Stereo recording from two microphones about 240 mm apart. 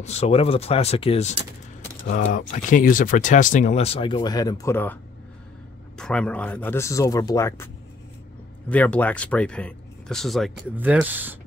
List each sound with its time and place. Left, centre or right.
0.0 s speech: left
2.3 s speech: left; by 4.9 s centre
5.9 s speech: centre